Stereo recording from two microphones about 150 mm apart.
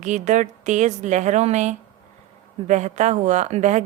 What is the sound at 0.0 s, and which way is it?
A woman's voice, 55° right (ahead or behind).